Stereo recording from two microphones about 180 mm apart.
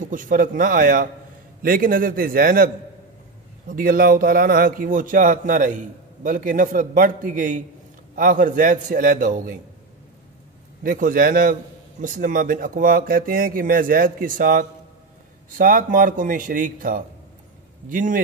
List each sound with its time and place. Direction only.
0.0 s speech: 45° right (ahead or behind)
10.8 s speech: 50° right (ahead or behind)